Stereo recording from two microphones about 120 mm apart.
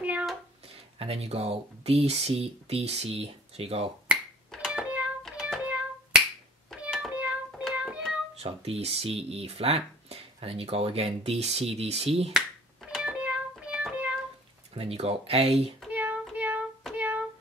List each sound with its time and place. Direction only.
0.0 s a sound: 10° right (ahead or behind)
0.9 s speech: 55° right (ahead or behind)
4.5 s a sound: centre (ahead or behind)
4.8 s a sound: 10° right (ahead or behind)
5.3 s finger snapping: 5° right (ahead or behind)
6.9 s music: 10° right (ahead or behind)
8.4 s speech: 60° right (ahead or behind)
12.3 s music: 5° right (ahead or behind)
14.8 s speech: 55° right (ahead or behind)
15.9 s child singing: 10° right (ahead or behind)
16.9 s music: 10° right (ahead or behind)